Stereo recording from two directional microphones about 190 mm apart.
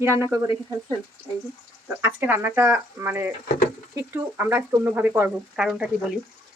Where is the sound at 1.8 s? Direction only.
10° right (ahead or behind).